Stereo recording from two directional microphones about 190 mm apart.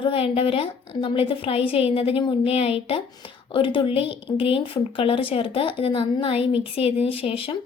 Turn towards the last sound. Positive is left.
turn(degrees=30)  # may be behind; listen again after turning